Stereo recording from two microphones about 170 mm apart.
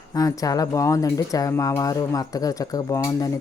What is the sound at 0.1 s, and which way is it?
Speech, 20° left (ahead or behind).